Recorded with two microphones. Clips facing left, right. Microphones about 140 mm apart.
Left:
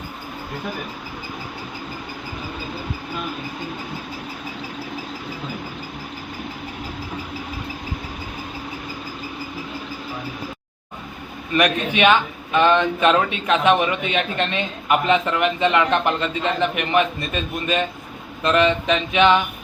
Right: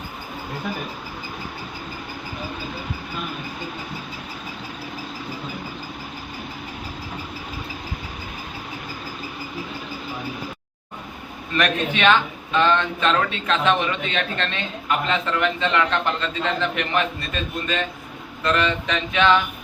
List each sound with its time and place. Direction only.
11.5 s speech: 10° left (ahead or behind)